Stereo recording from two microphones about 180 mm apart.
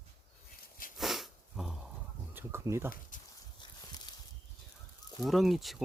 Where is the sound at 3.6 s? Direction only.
25° left (ahead or behind).